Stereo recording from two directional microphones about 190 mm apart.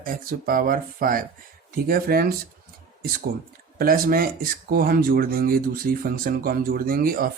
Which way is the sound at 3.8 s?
50° right (ahead or behind).